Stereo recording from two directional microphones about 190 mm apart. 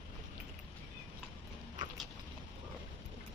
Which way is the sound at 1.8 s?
45° right (ahead or behind).